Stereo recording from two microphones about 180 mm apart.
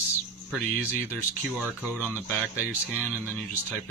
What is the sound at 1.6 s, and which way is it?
Speech, 10° right (ahead or behind).